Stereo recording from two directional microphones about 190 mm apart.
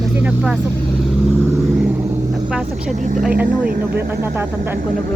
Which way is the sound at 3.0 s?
40° right (ahead or behind).